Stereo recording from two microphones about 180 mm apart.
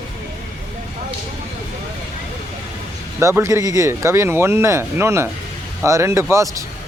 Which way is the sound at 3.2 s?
15° right (ahead or behind).